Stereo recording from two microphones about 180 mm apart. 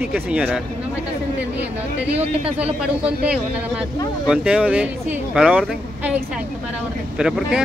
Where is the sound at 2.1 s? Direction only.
35° right (ahead or behind).